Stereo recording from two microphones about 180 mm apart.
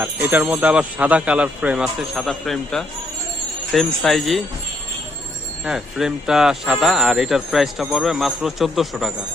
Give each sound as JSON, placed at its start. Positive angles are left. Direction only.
{"t": 0.0, "sound": "speech", "side_deg": -10}
{"t": 5.6, "sound": "speech", "side_deg": -5}